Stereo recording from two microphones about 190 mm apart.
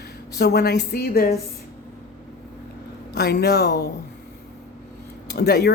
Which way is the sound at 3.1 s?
60° left (ahead or behind).